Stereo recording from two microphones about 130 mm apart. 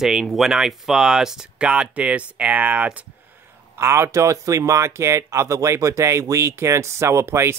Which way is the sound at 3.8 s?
20° right (ahead or behind).